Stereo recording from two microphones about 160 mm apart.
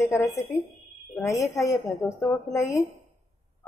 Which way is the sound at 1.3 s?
20° left (ahead or behind).